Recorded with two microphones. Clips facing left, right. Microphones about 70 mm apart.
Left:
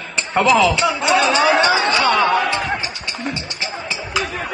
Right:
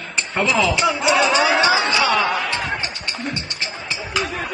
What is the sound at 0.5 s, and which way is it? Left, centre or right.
Speech, centre.